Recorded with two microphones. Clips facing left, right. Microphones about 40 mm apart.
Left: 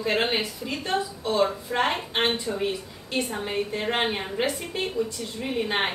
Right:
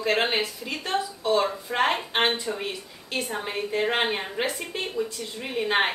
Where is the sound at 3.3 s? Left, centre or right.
Centre.